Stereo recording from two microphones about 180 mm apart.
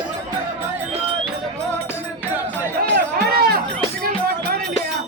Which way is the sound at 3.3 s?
60° right (ahead or behind).